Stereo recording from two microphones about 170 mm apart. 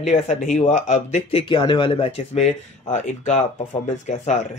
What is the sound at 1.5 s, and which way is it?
Speech, 25° left (ahead or behind).